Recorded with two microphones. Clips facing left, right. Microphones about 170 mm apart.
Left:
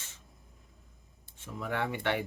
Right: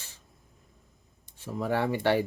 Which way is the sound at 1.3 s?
35° right (ahead or behind).